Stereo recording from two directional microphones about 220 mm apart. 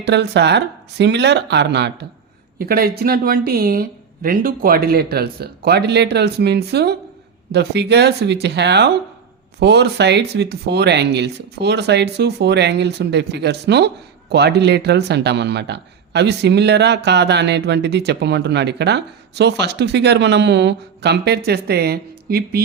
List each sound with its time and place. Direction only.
0.0 s speech: 50° right (ahead or behind)